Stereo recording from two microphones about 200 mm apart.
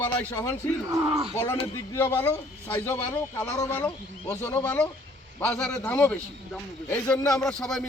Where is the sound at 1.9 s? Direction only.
15° left (ahead or behind).